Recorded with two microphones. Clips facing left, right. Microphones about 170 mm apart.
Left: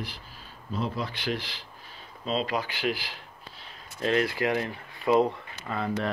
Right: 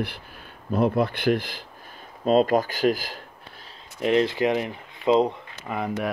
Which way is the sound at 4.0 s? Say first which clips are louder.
Right 5 dB; 20° right (ahead or behind).